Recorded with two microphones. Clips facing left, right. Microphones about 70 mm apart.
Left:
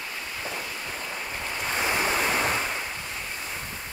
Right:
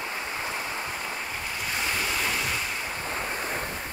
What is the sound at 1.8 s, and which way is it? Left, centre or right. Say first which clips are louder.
Waves: left 4 dB; left.